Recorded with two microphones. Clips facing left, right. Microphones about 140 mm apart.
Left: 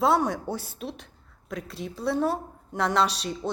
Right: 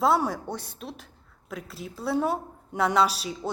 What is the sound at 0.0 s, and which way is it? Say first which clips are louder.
A woman's voice: left 1 dB; centre (ahead or behind).